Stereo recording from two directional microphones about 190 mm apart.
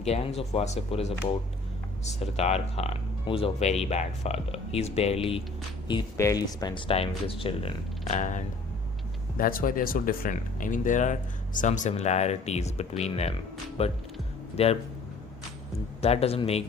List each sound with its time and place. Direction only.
0.0 s speech: 35° left (ahead or behind)
2.1 s speech: 35° left (ahead or behind)
5.9 s speech: 20° left (ahead or behind); by 8.4 s 40° left (ahead or behind)
9.4 s speech: 50° left (ahead or behind); by 14.8 s 30° left (ahead or behind)
16.0 s speech: 30° left (ahead or behind)